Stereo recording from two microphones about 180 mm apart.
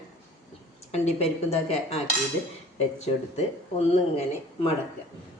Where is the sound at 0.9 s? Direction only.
35° left (ahead or behind).